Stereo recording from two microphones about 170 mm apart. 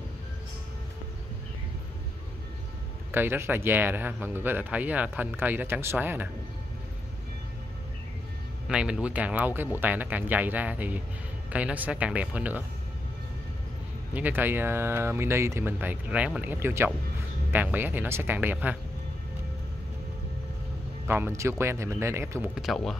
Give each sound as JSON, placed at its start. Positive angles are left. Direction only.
{"t": 3.1, "sound": "speech", "side_deg": -15}
{"t": 8.6, "sound": "speech", "side_deg": -5}
{"t": 14.1, "sound": "speech", "side_deg": -10}
{"t": 21.1, "sound": "speech", "side_deg": -15}
{"t": 22.6, "sound": "speech", "side_deg": 0}